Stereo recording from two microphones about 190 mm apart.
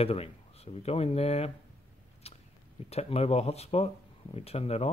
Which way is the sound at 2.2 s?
35° left (ahead or behind).